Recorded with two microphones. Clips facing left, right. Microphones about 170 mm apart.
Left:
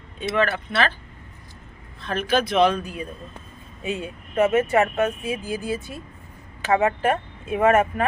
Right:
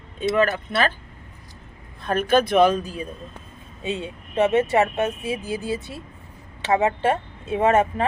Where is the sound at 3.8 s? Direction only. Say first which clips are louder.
Right 1 dB; 25° right (ahead or behind).